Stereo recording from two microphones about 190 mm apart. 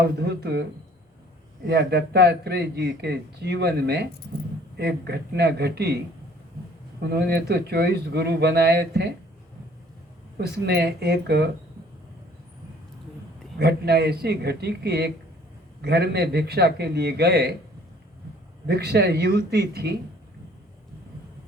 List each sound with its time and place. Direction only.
0.0 s speech: 60° right (ahead or behind)
1.6 s speech: 60° right (ahead or behind)
7.1 s speech: 60° right (ahead or behind)
10.3 s speech: 55° right (ahead or behind)
13.6 s speech: 60° right (ahead or behind)
18.6 s speech: 60° right (ahead or behind)